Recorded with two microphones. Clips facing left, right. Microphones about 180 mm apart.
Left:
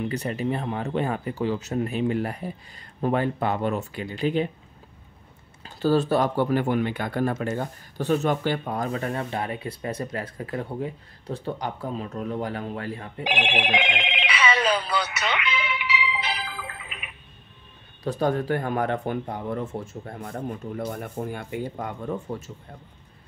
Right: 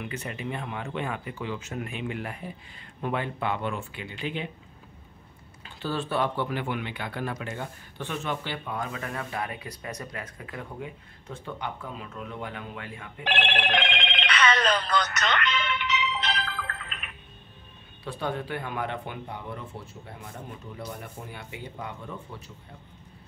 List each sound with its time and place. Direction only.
0.0 s speech: 35° left (ahead or behind)
5.6 s speech: 40° left (ahead or behind)
13.2 s telephone bell ringing: 10° left (ahead or behind)
18.0 s speech: 40° left (ahead or behind)